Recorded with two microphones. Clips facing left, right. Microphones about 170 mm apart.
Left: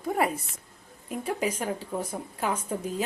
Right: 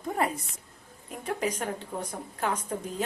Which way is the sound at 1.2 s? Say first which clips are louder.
Left 1 dB; 10° left (ahead or behind).